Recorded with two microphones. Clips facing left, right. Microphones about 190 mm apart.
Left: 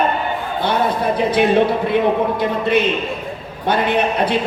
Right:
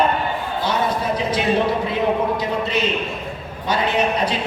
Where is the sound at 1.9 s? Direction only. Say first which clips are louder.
Left 3 dB; 60° left (ahead or behind).